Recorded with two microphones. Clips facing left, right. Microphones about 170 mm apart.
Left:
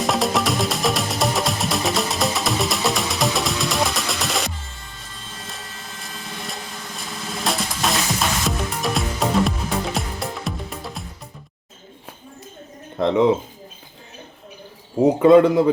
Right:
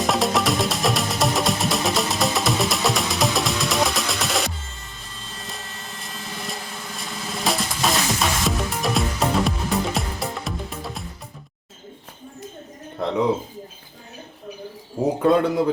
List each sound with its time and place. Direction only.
0.0 s music: centre (ahead or behind)
6.0 s drum: centre (ahead or behind)
15.2 s a man's voice: 85° left